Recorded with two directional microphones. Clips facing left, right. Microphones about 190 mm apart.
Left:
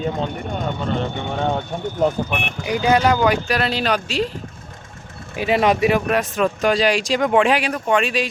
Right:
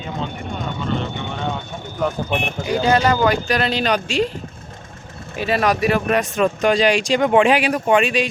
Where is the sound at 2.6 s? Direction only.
10° left (ahead or behind).